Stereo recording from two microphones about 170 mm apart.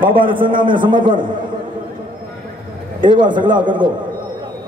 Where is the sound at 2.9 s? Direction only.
25° right (ahead or behind).